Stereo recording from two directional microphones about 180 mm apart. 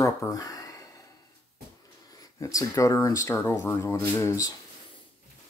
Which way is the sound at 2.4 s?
20° left (ahead or behind).